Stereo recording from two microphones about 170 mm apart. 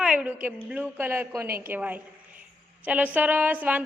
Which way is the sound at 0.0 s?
5° right (ahead or behind).